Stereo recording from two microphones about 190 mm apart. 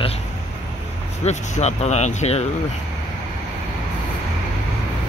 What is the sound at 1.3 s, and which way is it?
Speech, 35° left (ahead or behind).